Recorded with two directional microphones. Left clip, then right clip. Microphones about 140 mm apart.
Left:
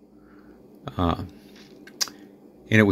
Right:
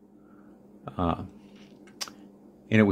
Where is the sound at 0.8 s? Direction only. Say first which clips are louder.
Left 3 dB; 10° left (ahead or behind).